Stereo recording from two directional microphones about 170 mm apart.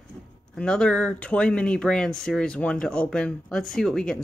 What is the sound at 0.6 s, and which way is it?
Speech, 5° left (ahead or behind).